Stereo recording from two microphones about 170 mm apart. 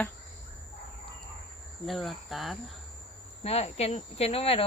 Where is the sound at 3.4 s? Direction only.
40° left (ahead or behind).